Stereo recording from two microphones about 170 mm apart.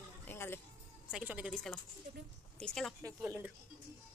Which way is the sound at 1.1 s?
5° right (ahead or behind).